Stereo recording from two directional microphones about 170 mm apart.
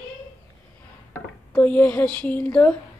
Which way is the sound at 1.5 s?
10° left (ahead or behind).